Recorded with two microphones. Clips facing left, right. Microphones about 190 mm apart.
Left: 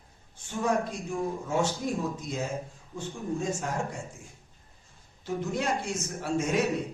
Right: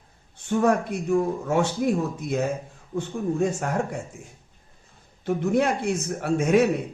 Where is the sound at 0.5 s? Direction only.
65° right (ahead or behind).